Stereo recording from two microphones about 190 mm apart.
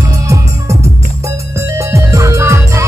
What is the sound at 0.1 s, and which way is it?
Music, 15° right (ahead or behind).